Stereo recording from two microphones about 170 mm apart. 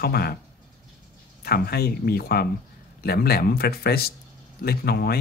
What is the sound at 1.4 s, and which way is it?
Speech, 65° left (ahead or behind).